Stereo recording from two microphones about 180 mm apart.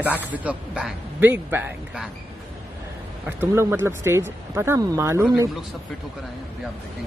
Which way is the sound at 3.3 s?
10° right (ahead or behind).